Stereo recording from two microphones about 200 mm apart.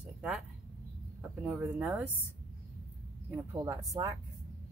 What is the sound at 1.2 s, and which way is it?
Speech, 5° right (ahead or behind).